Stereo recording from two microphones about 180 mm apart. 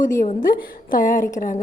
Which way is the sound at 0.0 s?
45° left (ahead or behind).